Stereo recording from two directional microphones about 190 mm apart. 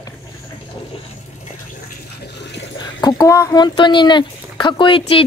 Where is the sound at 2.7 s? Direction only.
20° left (ahead or behind).